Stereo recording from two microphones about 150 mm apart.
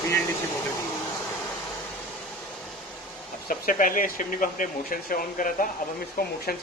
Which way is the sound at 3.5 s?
65° left (ahead or behind).